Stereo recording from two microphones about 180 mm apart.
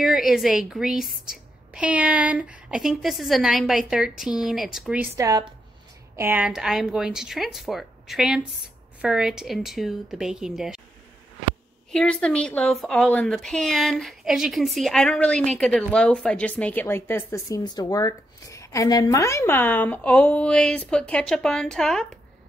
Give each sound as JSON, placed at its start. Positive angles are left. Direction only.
{"t": 0.0, "sound": "speech", "side_deg": 0}
{"t": 11.9, "sound": "speech", "side_deg": 5}